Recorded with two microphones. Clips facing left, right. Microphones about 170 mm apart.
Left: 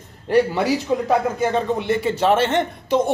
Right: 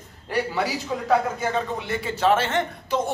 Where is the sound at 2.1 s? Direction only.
20° left (ahead or behind).